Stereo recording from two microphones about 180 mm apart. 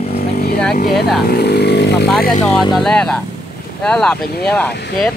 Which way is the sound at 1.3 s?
65° left (ahead or behind).